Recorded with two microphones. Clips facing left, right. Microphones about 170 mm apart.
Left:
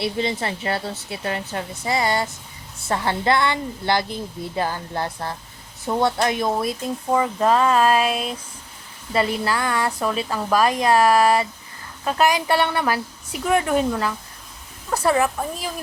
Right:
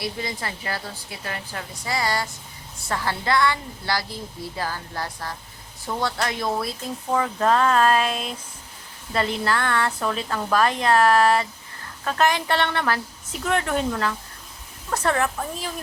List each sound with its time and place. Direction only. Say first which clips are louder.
0.0 s a woman's voice: left 6 dB; 25° left (ahead or behind); by 15.7 s 10° left (ahead or behind)